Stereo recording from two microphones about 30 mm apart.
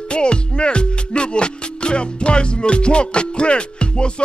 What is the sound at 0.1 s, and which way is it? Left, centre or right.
Speech, left.